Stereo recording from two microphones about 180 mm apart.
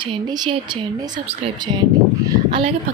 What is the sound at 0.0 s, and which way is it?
Speech, 25° right (ahead or behind).